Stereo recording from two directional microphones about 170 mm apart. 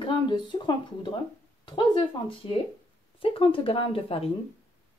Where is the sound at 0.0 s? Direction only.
30° left (ahead or behind).